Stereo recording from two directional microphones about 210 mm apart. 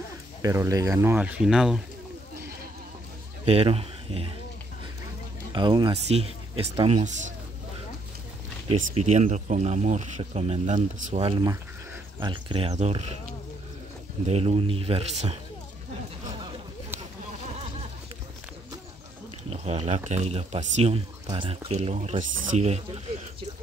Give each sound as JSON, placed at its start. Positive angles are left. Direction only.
{"t": 0.4, "sound": "speech", "side_deg": -15}
{"t": 3.4, "sound": "speech", "side_deg": -30}
{"t": 5.5, "sound": "speech", "side_deg": -20}
{"t": 8.6, "sound": "speech", "side_deg": -35}
{"t": 14.2, "sound": "speech", "side_deg": -30}
{"t": 19.5, "sound": "speech", "side_deg": -30}